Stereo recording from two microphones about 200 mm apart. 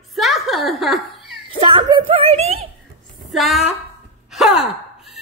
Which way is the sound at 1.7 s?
25° right (ahead or behind).